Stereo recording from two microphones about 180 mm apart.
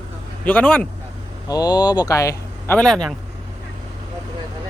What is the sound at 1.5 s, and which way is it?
Speech, 20° left (ahead or behind).